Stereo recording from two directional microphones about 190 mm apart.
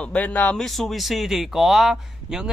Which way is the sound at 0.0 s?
5° left (ahead or behind).